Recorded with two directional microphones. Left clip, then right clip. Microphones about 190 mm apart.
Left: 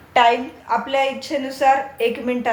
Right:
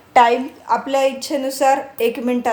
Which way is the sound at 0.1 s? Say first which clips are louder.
Right 2 dB; 55° right (ahead or behind).